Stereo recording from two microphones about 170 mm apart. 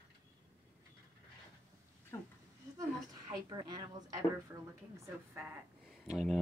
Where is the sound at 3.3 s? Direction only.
25° right (ahead or behind).